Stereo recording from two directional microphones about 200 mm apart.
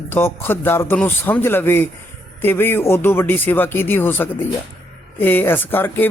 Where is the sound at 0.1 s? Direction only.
10° left (ahead or behind).